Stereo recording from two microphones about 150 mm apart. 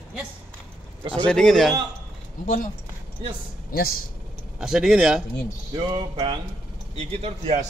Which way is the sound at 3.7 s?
90° left.